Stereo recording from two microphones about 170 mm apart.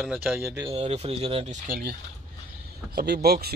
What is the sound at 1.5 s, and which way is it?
Speech, 55° right (ahead or behind).